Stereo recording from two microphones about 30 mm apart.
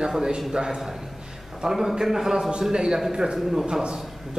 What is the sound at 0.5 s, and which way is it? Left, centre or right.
Speech, right.